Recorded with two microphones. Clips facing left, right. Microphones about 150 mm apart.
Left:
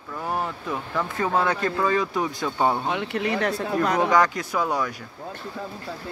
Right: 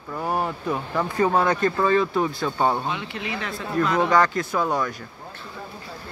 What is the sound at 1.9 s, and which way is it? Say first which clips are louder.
Speech: right 3 dB; 15° left (ahead or behind).